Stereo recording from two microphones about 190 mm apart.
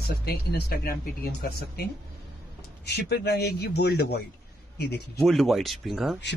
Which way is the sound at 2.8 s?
60° left (ahead or behind).